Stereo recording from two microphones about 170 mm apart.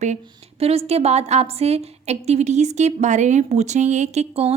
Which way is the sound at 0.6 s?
35° right (ahead or behind).